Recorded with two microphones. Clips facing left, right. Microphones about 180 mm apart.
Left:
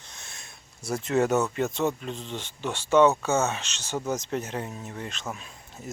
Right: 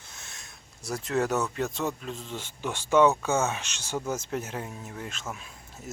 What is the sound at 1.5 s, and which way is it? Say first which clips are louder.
Speech: left 4 dB; centre (ahead or behind).